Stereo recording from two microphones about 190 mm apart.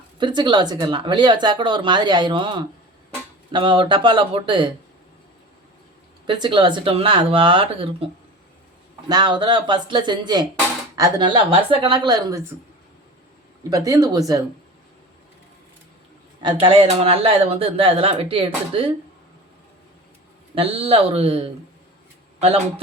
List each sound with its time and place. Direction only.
0.2 s speech: 25° right (ahead or behind)
6.2 s speech: 25° right (ahead or behind)
9.0 s speech: 20° right (ahead or behind)
13.7 s speech: 20° right (ahead or behind)
16.4 s speech: 25° right (ahead or behind)
20.6 s speech: 30° right (ahead or behind)